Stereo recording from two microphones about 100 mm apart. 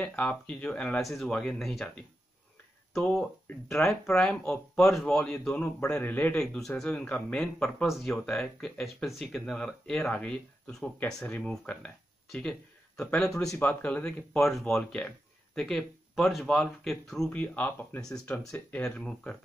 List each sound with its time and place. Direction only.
0.0 s speech: 10° left (ahead or behind)
2.9 s speech: 5° left (ahead or behind)
6.3 s speech: 5° left (ahead or behind)
17.3 s speech: 15° left (ahead or behind)
18.5 s speech: 5° left (ahead or behind)